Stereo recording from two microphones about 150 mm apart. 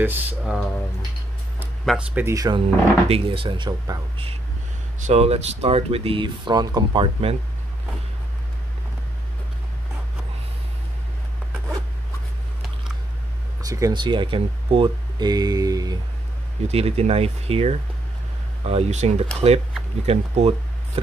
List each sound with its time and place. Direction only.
0.0 s speech: 15° right (ahead or behind)
1.9 s speech: 10° right (ahead or behind)
2.3 s speech: 25° right (ahead or behind)
2.6 s speech: 40° right (ahead or behind)
5.0 s speech: 45° right (ahead or behind)
13.6 s speech: 25° right (ahead or behind)
16.6 s speech: 45° right (ahead or behind)